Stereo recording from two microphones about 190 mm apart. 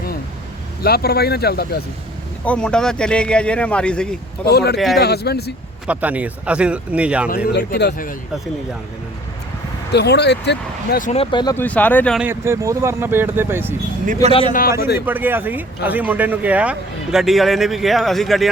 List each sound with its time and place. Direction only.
0.8 s speech: 55° left (ahead or behind)
2.4 s speech: 5° left (ahead or behind)
4.4 s speech: 60° left (ahead or behind)
5.9 s speech: 10° right (ahead or behind)
7.4 s speech: 60° left (ahead or behind)
9.9 s speech: 60° left (ahead or behind)
11.0 s speech: 35° left (ahead or behind)
11.5 s speech: 10° left (ahead or behind)
12.2 s speech: 15° right (ahead or behind)
14.1 s speech: 35° right (ahead or behind)
14.8 s speech: 60° left (ahead or behind)
15.0 s speech: 10° right (ahead or behind)